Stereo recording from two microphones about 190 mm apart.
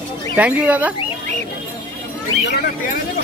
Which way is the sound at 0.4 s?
10° right (ahead or behind).